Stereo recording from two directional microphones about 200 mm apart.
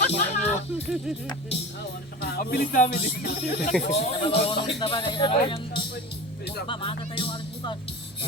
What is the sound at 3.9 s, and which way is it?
Speech, 30° left (ahead or behind).